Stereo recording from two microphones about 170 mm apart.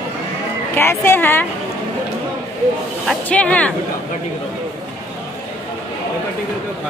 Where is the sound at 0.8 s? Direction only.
15° left (ahead or behind).